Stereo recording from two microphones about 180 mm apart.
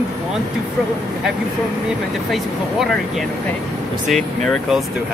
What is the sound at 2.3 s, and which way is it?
Speech, centre (ahead or behind).